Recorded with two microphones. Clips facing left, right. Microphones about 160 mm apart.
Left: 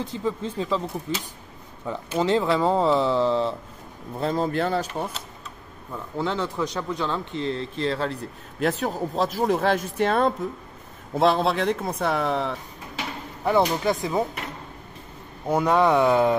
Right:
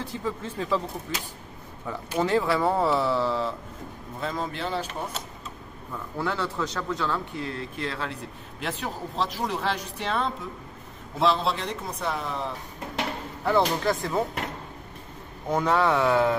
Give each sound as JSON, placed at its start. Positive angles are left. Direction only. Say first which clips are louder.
{"t": 0.0, "sound": "speech", "louder": "left 4 dB", "side_deg": 20}
{"t": 4.2, "sound": "speech", "louder": "left 6 dB", "side_deg": 35}
{"t": 4.6, "sound": "speech", "louder": "left 6 dB", "side_deg": 50}
{"t": 6.1, "sound": "speech", "louder": "left 3 dB", "side_deg": 20}
{"t": 13.4, "sound": "speech", "louder": "left 2 dB", "side_deg": 15}
{"t": 15.4, "sound": "speech", "louder": "left 3 dB", "side_deg": 10}